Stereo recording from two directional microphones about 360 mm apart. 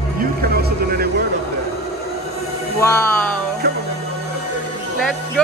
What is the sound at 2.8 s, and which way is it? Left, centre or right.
Speech, centre.